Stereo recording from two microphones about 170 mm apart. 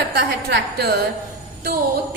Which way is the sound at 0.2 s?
65° right (ahead or behind).